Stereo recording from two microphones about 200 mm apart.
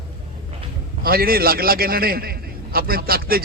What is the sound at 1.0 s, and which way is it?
A man's voice, 50° right (ahead or behind).